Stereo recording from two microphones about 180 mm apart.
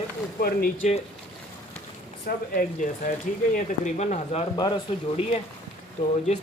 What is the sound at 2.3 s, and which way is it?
Speech, 50° left (ahead or behind).